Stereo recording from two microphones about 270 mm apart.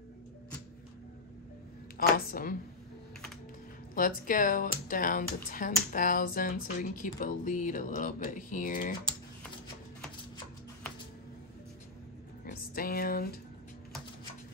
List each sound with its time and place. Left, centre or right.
2.0 s speech: left
3.9 s speech: left
12.4 s speech: left